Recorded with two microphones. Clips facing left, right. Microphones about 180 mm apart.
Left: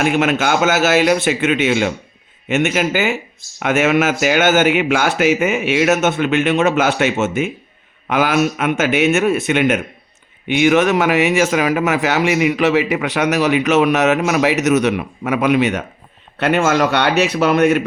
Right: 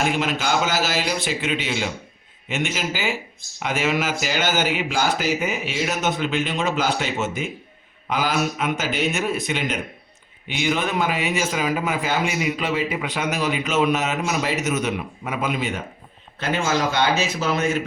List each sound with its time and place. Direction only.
0.0 s speech: 65° left (ahead or behind)
16.4 s speech: 65° left (ahead or behind)